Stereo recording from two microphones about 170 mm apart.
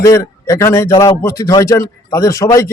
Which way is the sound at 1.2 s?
20° left (ahead or behind).